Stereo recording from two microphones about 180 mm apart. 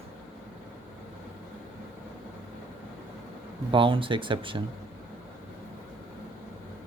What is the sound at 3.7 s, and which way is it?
Speech, 30° right (ahead or behind).